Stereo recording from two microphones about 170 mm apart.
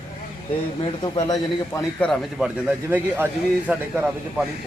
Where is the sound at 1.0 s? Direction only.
25° left (ahead or behind).